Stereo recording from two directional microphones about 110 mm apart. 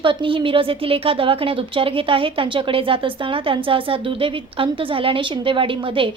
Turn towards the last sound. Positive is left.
turn(degrees=-55)  # may be behind; listen again after turning